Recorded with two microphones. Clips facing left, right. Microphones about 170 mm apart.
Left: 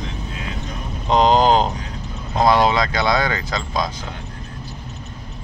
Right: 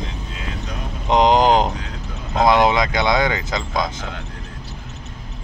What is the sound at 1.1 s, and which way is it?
Speech, 20° right (ahead or behind).